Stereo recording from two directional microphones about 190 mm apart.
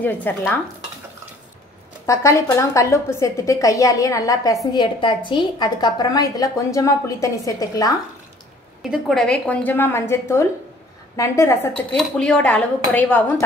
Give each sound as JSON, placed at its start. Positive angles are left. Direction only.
{"t": 0.0, "sound": "a woman's voice", "side_deg": 10}
{"t": 2.0, "sound": "a woman's voice", "side_deg": 15}
{"t": 8.9, "sound": "a woman's voice", "side_deg": 0}
{"t": 11.7, "sound": "a woman's voice", "side_deg": 5}